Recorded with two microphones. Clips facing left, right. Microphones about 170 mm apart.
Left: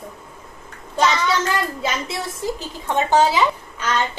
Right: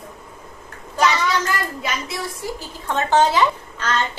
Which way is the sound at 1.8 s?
25° left (ahead or behind).